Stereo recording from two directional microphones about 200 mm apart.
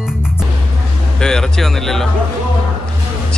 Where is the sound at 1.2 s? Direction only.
5° left (ahead or behind).